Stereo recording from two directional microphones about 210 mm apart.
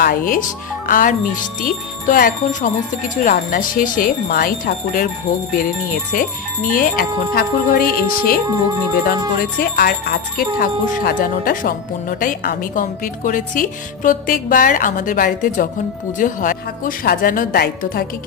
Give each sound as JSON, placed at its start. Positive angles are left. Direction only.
{"t": 0.0, "sound": "a woman's voice", "side_deg": 40}
{"t": 6.7, "sound": "a woman's voice", "side_deg": 40}